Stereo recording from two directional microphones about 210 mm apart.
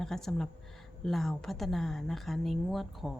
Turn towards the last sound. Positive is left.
turn(degrees=0)  # may be behind; listen again after turning